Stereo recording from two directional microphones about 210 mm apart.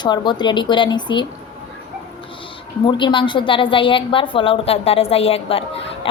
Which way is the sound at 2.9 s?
20° left (ahead or behind).